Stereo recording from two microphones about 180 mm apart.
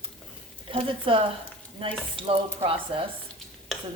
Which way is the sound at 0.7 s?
30° right (ahead or behind).